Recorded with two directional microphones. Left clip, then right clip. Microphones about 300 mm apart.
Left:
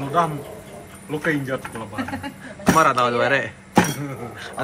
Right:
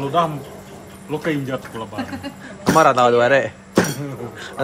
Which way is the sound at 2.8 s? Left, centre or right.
Centre.